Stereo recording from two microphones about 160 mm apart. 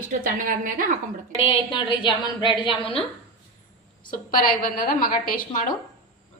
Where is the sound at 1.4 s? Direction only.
35° left (ahead or behind).